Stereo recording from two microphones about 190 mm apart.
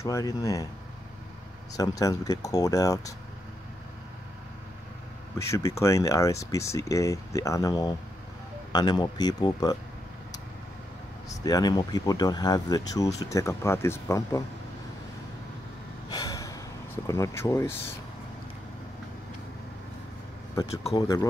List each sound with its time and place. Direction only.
0.0 s speech: 15° left (ahead or behind)
1.8 s speech: 20° left (ahead or behind)
5.4 s speech: 15° left (ahead or behind)
11.2 s speech: 20° left (ahead or behind)
16.1 s gasp: 20° left (ahead or behind)
20.9 s speech: 20° left (ahead or behind)